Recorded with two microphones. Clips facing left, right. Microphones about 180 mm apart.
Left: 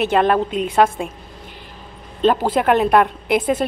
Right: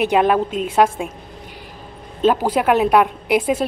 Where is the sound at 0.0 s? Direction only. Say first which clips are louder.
Even; 10° right (ahead or behind).